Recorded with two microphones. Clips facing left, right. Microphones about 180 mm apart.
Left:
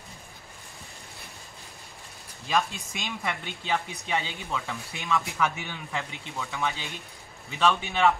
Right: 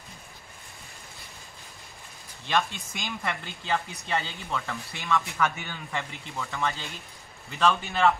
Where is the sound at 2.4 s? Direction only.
5° left (ahead or behind).